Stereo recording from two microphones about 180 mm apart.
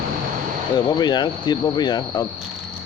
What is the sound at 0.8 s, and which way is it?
Speech, 25° left (ahead or behind).